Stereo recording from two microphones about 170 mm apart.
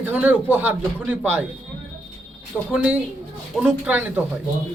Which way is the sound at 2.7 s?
5° right (ahead or behind).